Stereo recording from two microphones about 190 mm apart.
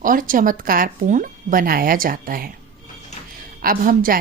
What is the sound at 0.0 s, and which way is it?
A woman's voice, 45° right (ahead or behind).